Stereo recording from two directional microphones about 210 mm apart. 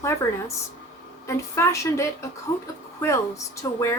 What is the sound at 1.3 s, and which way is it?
A woman's voice, 15° left (ahead or behind).